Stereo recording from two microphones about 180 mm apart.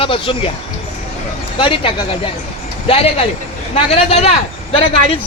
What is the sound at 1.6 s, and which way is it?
A man's voice, 30° left (ahead or behind).